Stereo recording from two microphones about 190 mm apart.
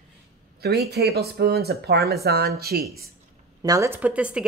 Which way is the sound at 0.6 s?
55° right (ahead or behind).